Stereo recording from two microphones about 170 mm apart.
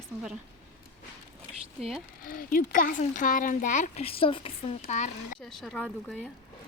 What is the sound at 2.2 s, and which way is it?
Speech, 55° left (ahead or behind).